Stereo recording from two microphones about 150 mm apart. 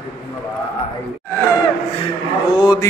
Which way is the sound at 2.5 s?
30° left (ahead or behind).